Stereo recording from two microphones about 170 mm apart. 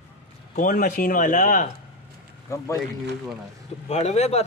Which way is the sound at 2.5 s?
15° left (ahead or behind).